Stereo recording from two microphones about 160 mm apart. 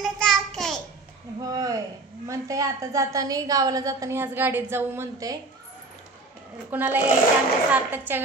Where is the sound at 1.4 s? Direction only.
20° right (ahead or behind).